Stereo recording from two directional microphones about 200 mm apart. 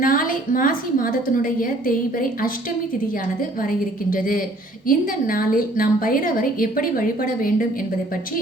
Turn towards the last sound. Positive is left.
turn(degrees=45)  # may be behind; listen again after turning